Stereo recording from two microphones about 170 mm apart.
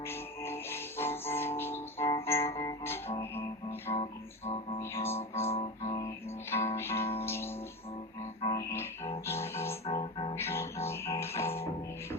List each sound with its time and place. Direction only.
0.0 s music: 15° left (ahead or behind)
3.9 s music: 35° left (ahead or behind)
4.8 s music: 15° left (ahead or behind)
5.5 s music: 35° left (ahead or behind)
6.7 s music: 15° left (ahead or behind)
8.4 s music: 25° left (ahead or behind)
9.2 s music: 15° left (ahead or behind)
9.9 s music: 30° left (ahead or behind)
10.3 s music: 15° left (ahead or behind)